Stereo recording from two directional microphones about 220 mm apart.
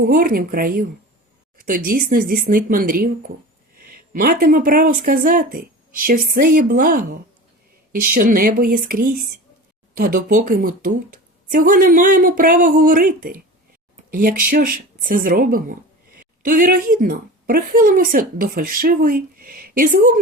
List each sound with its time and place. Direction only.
0.0 s a woman's voice: 40° right (ahead or behind)